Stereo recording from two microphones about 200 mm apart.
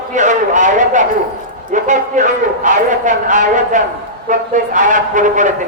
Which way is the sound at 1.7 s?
40° right (ahead or behind).